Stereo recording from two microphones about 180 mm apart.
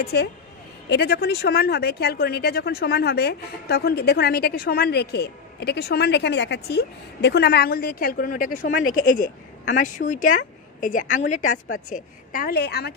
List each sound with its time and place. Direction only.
0.0 s a woman's voice: 65° left (ahead or behind)